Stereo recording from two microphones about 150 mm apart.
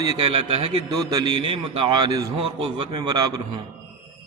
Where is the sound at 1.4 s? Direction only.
35° right (ahead or behind).